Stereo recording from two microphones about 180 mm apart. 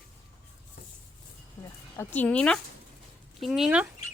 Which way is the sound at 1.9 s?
10° left (ahead or behind).